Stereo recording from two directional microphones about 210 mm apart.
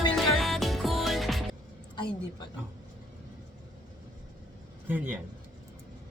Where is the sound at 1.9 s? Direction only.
20° left (ahead or behind).